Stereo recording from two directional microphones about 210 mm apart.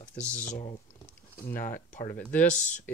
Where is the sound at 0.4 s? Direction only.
35° left (ahead or behind).